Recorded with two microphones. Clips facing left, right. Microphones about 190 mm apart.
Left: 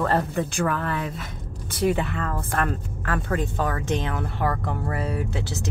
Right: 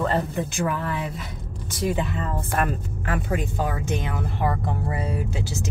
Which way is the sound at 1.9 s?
65° left (ahead or behind).